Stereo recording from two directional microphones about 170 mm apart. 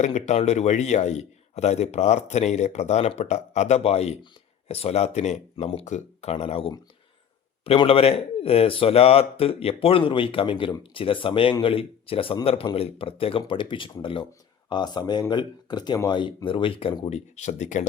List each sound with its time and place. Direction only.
0.0 s speech: 45° left (ahead or behind)
17.1 s speech: 40° left (ahead or behind)